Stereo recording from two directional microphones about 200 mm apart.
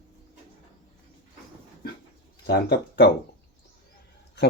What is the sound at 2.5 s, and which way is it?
Speech, 55° left (ahead or behind).